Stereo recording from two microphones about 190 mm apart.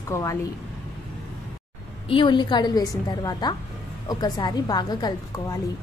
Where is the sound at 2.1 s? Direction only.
25° left (ahead or behind).